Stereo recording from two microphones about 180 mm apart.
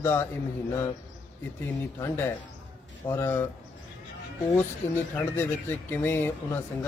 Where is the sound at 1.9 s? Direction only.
15° left (ahead or behind).